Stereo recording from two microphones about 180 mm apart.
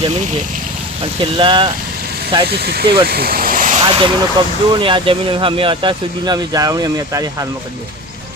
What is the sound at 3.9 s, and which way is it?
Speech, 30° right (ahead or behind).